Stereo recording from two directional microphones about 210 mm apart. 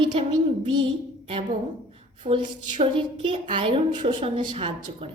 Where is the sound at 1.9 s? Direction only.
25° right (ahead or behind).